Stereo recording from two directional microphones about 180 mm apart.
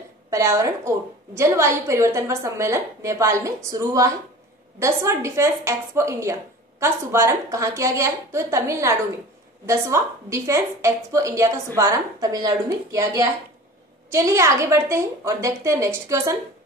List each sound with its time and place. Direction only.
0.3 s a woman's voice: 15° right (ahead or behind)